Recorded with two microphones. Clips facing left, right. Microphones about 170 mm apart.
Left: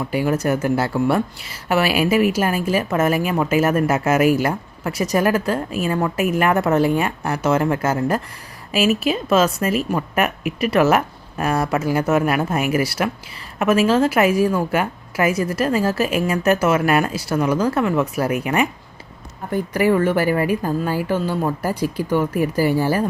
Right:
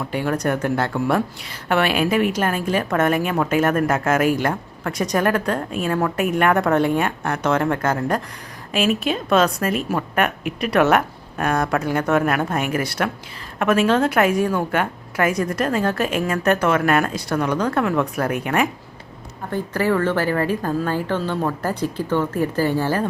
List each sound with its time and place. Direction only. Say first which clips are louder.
0.0 s speech: left 2 dB; 5° left (ahead or behind)